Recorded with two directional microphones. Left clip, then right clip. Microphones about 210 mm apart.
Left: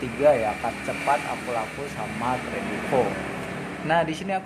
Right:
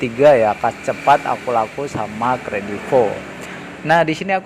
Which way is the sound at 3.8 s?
35° right (ahead or behind).